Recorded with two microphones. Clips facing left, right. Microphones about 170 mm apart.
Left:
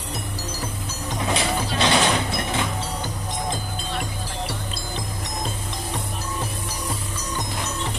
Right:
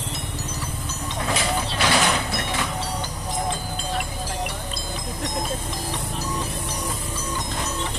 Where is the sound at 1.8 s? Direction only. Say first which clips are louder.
Left 2 dB; 25° left (ahead or behind).